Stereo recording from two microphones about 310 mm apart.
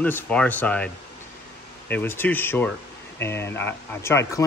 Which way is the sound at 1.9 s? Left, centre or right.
Centre.